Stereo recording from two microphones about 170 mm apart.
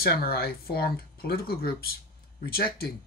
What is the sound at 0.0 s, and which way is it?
Speech, 65° left (ahead or behind).